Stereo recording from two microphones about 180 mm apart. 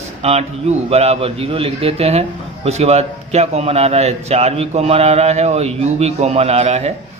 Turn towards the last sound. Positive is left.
turn(degrees=-35)  # may be behind; listen again after turning